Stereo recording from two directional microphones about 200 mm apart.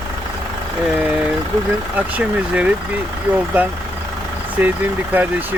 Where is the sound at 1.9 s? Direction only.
5° right (ahead or behind).